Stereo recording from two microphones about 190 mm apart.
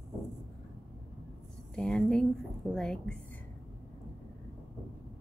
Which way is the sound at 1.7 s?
5° left (ahead or behind).